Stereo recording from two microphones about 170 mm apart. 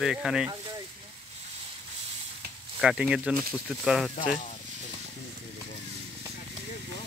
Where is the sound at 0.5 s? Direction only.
25° right (ahead or behind).